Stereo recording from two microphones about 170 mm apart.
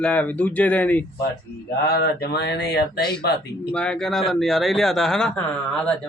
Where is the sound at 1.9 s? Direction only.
70° left (ahead or behind).